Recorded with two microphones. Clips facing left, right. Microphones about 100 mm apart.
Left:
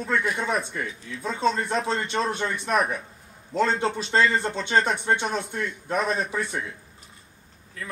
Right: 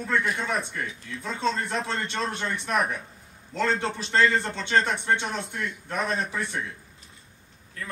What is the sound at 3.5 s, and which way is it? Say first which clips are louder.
Speech: left 3 dB; 15° left (ahead or behind).